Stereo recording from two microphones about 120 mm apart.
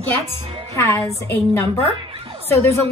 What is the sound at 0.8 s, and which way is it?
Speech, 20° left (ahead or behind).